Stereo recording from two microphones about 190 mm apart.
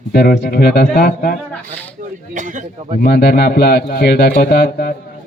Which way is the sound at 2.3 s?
40° right (ahead or behind).